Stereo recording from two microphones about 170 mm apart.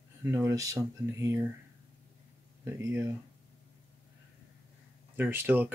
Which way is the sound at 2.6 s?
15° right (ahead or behind).